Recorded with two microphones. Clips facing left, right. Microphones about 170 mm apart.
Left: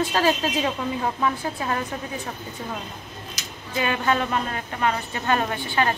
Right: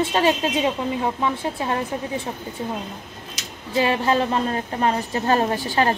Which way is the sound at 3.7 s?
30° right (ahead or behind).